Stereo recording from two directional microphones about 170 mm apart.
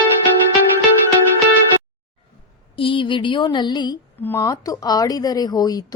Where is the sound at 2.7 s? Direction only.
30° left (ahead or behind).